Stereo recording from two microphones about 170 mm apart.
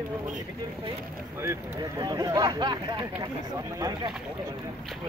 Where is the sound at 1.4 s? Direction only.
25° right (ahead or behind).